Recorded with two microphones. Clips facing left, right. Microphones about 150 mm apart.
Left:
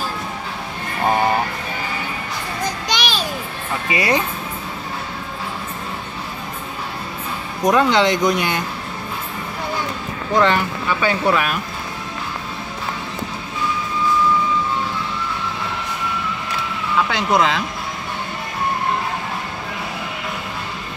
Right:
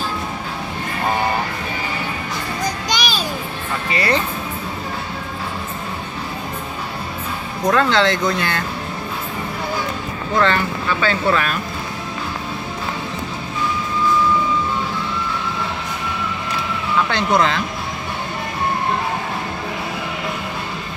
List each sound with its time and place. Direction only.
2.9 s music: centre (ahead or behind)
3.9 s speech: 15° left (ahead or behind)
7.6 s speech: 15° left (ahead or behind)
10.3 s speech: 10° left (ahead or behind)
17.1 s speech: 10° left (ahead or behind)